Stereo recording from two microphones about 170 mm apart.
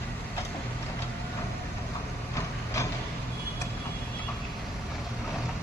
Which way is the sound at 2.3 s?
20° left (ahead or behind).